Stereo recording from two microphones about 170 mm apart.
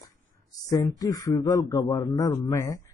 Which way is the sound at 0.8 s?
20° left (ahead or behind).